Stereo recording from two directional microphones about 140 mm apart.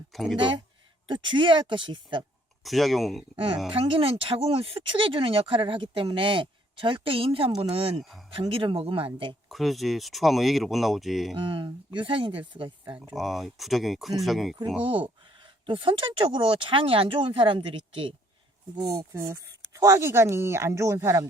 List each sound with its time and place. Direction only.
0.1 s speech: centre (ahead or behind)
1.0 s speech: 35° right (ahead or behind)
2.6 s speech: centre (ahead or behind)
3.3 s speech: 40° right (ahead or behind)
9.5 s speech: centre (ahead or behind)
11.3 s speech: 35° right (ahead or behind)
13.1 s speech: centre (ahead or behind)
15.6 s speech: 40° right (ahead or behind)
19.1 s speech: 20° right (ahead or behind)